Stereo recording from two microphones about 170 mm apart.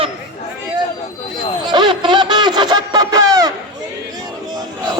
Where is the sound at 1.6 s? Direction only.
25° right (ahead or behind).